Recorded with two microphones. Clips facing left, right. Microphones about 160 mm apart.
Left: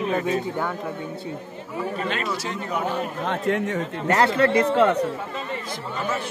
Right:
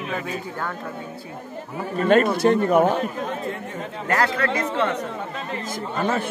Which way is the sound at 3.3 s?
80° left.